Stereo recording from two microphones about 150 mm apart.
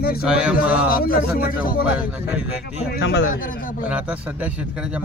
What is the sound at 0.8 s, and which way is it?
Speech, 75° left (ahead or behind).